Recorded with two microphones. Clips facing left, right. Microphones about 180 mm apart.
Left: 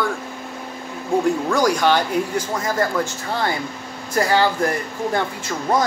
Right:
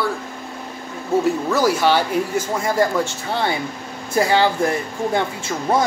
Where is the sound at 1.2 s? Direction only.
5° right (ahead or behind).